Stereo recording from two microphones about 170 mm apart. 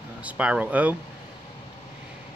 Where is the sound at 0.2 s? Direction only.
10° right (ahead or behind).